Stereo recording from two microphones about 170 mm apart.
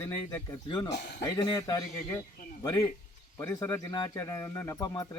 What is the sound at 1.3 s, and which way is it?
Speech, 25° left (ahead or behind).